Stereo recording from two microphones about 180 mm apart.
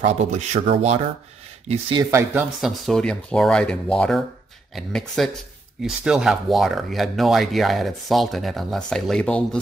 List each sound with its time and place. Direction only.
0.0 s speech: 40° right (ahead or behind)
1.7 s speech: 25° right (ahead or behind)
2.6 s speech: centre (ahead or behind)